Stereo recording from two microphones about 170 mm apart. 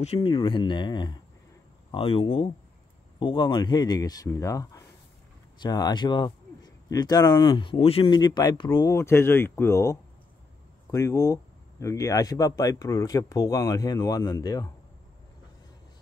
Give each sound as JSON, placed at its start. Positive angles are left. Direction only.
{"t": 0.0, "sound": "a man's voice", "side_deg": 35}